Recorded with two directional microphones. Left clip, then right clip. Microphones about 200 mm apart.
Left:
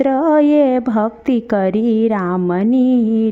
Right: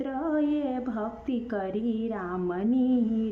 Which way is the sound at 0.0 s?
45° left (ahead or behind).